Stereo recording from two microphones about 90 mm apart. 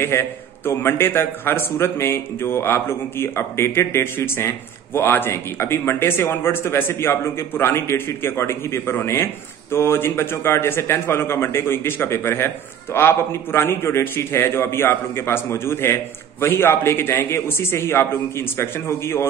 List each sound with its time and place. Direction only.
0.0 s a man's voice: 25° left (ahead or behind)